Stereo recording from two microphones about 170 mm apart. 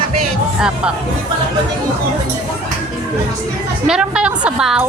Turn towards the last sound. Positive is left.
turn(degrees=-5)  # may be behind; listen again after turning